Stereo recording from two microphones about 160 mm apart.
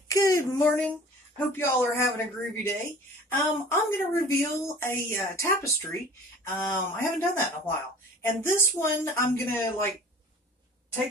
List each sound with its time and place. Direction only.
0.1 s a woman's voice: 20° left (ahead or behind)